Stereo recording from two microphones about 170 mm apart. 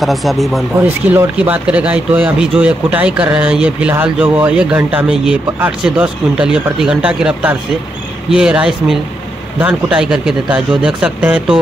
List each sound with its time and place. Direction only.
0.0 s speech: centre (ahead or behind)
0.8 s speech: 10° right (ahead or behind)